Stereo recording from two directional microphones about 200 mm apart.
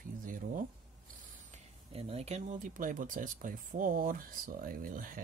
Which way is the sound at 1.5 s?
30° right (ahead or behind).